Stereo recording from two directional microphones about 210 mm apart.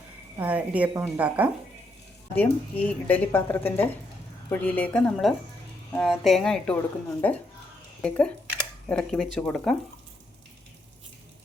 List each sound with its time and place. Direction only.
0.3 s a woman's voice: 5° right (ahead or behind)
2.3 s speech: 5° left (ahead or behind)